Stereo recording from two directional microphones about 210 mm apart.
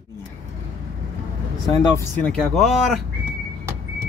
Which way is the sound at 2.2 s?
Centre (ahead or behind).